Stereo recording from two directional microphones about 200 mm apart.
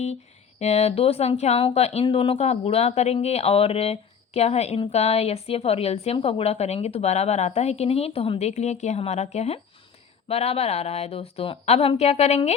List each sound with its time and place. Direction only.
0.6 s a woman's voice: 35° left (ahead or behind)